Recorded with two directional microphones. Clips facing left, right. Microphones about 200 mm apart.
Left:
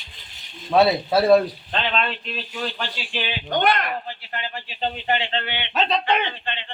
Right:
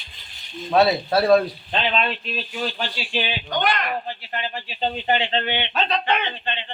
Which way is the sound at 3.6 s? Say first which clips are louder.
Left 3 dB; 55° left (ahead or behind).